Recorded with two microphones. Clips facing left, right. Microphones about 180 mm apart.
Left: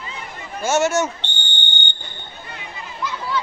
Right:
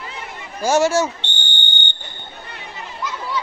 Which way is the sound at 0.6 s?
35° right (ahead or behind).